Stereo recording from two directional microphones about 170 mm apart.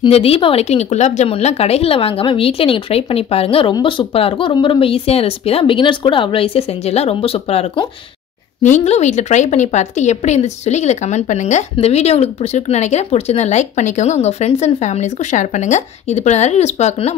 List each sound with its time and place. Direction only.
0.0 s a woman's voice: 35° left (ahead or behind)